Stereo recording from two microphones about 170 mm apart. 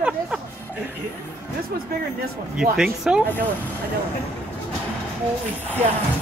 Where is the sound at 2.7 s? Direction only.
5° right (ahead or behind).